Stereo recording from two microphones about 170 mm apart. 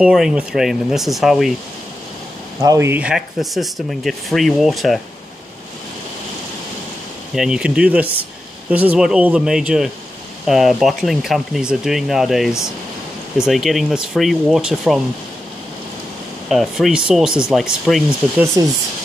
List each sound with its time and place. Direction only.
0.0 s speech: 5° right (ahead or behind)
2.6 s speech: 15° right (ahead or behind); by 5.0 s centre (ahead or behind)
7.3 s speech: 5° right (ahead or behind)
16.4 s speech: centre (ahead or behind)
18.6 s speech: 20° right (ahead or behind)